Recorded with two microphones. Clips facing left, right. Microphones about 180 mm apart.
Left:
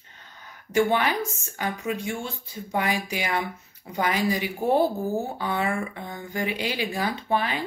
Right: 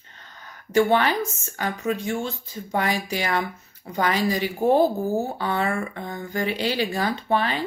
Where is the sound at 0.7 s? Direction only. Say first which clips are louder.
Right 3 dB; 10° left (ahead or behind).